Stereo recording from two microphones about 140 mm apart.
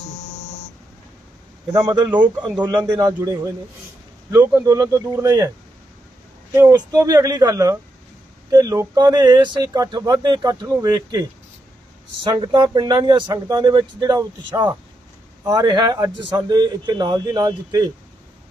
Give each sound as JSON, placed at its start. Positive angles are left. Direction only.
{"t": 1.7, "sound": "a man's voice", "side_deg": -30}
{"t": 6.5, "sound": "a man's voice", "side_deg": -20}